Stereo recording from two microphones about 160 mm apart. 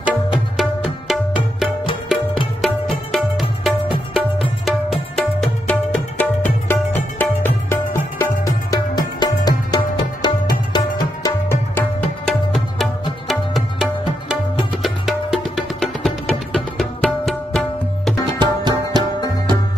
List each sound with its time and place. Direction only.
0.0 s music: 5° right (ahead or behind); by 11.3 s 25° left (ahead or behind)
12.3 s music: centre (ahead or behind)
18.4 s music: 25° right (ahead or behind)